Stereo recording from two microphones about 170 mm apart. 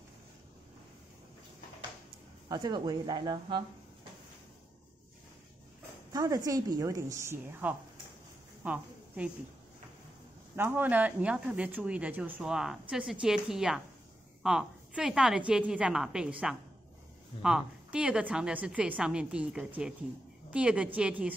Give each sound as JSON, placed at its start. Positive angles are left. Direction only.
{"t": 2.4, "sound": "a woman's voice", "side_deg": -25}
{"t": 6.1, "sound": "a woman's voice", "side_deg": -20}
{"t": 10.5, "sound": "a woman's voice", "side_deg": -10}